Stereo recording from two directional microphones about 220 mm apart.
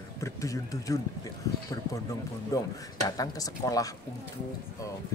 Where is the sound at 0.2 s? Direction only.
15° left (ahead or behind).